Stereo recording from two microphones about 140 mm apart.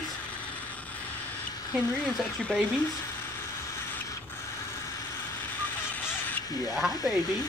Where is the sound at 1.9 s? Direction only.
10° left (ahead or behind).